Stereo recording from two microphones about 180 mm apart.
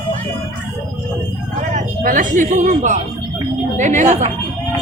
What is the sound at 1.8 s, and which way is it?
Speech, 45° right (ahead or behind).